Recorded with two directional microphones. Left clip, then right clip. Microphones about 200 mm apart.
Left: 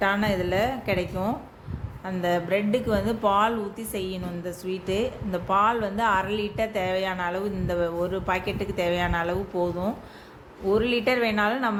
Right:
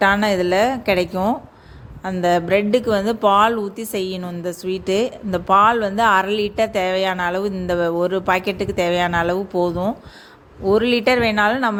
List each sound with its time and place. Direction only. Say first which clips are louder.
0.0 s speech: right 8 dB; 45° right (ahead or behind)